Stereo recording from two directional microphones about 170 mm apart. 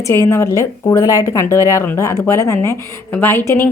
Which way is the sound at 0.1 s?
15° left (ahead or behind).